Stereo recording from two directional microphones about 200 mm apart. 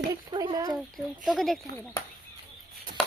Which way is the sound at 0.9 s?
Centre (ahead or behind).